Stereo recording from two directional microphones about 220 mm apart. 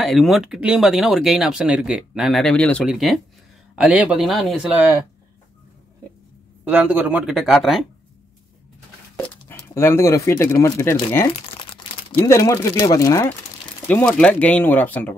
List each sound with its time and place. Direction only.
0.0 s speech: centre (ahead or behind)
6.6 s speech: 5° right (ahead or behind)
9.2 s speech: 10° left (ahead or behind)
11.2 s crumpling: 25° left (ahead or behind)
12.3 s speech: 15° left (ahead or behind)